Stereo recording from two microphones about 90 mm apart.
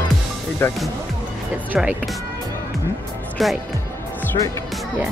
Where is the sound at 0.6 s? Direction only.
25° left (ahead or behind).